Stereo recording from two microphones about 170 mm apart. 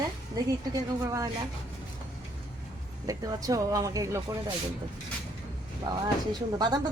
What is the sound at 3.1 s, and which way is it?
Speech, 20° right (ahead or behind).